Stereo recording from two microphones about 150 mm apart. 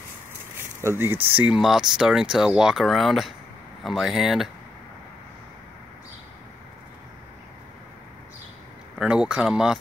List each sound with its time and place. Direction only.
0.7 s speech: 15° right (ahead or behind)
8.9 s speech: 5° right (ahead or behind)